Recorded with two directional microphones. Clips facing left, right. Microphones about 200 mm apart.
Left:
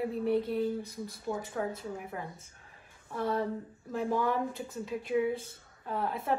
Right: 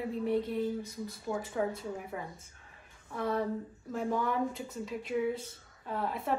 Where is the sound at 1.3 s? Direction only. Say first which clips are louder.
Even; 15° left (ahead or behind).